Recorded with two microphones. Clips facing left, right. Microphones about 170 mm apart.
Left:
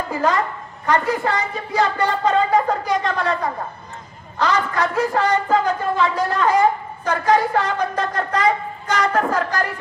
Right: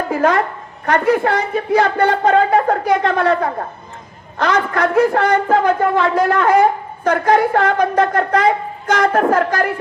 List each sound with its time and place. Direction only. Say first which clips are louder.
0.1 s a man's voice: right 4 dB; 60° right (ahead or behind)